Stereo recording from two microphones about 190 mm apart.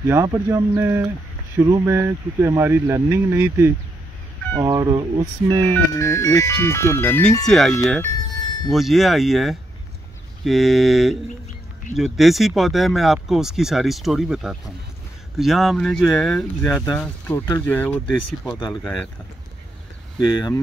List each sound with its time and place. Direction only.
0.0 s speech: 15° right (ahead or behind)
5.9 s speech: 15° left (ahead or behind)
8.7 s speech: centre (ahead or behind)
20.2 s speech: 20° left (ahead or behind)